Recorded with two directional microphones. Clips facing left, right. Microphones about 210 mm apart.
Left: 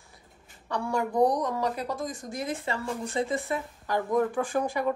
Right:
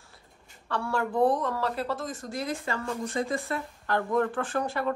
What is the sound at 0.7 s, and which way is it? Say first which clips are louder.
Speech: left 1 dB; 15° left (ahead or behind).